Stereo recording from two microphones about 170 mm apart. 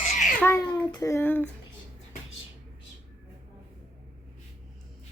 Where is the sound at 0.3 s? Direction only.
10° left (ahead or behind).